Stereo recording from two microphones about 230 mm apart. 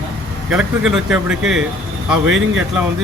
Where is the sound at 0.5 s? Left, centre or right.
Centre.